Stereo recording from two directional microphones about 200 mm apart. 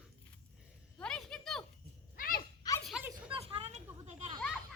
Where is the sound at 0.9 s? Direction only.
5° left (ahead or behind).